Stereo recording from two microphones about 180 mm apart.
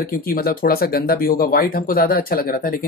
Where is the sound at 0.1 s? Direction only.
55° left (ahead or behind).